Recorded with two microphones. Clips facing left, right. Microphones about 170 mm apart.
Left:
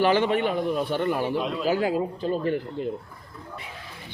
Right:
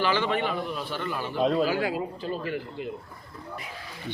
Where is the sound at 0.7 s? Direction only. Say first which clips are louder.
Left 8 dB; 50° left (ahead or behind).